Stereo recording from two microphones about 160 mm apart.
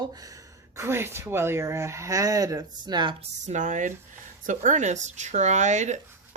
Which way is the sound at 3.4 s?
50° right (ahead or behind).